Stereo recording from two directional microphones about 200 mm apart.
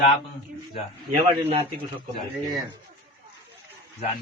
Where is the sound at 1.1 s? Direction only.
30° right (ahead or behind).